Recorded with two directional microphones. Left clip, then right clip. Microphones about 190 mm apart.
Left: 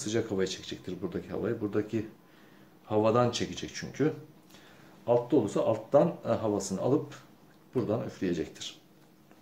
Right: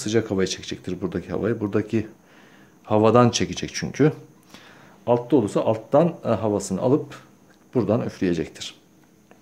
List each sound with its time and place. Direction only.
0.0 s speech: 45° right (ahead or behind)